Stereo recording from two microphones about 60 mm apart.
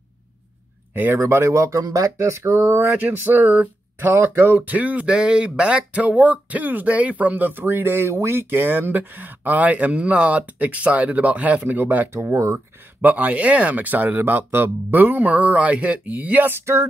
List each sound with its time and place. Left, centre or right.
1.1 s speech: right
3.0 s speech: right
4.6 s speech: right
8.1 s speech: right
12.1 s speech: right
12.5 s speech: right